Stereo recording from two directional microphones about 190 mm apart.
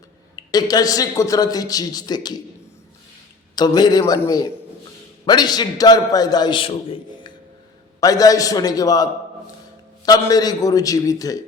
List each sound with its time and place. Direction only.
0.3 s a man's voice: 20° left (ahead or behind)
3.5 s a man's voice: 20° left (ahead or behind)
10.1 s a man's voice: 20° left (ahead or behind)